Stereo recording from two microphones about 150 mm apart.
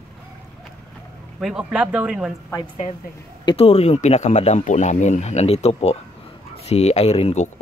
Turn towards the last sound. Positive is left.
turn(degrees=45)  # may be behind; listen again after turning